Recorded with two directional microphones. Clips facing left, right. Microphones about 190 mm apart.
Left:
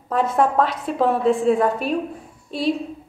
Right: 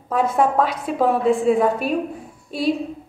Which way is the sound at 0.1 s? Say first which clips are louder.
Right 1 dB; 10° right (ahead or behind).